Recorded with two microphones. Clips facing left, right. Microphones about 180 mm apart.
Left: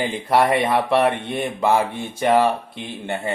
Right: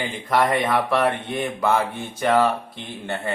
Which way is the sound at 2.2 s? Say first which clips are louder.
Left 2 dB; 25° left (ahead or behind).